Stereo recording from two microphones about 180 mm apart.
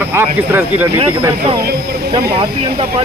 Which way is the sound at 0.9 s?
30° right (ahead or behind).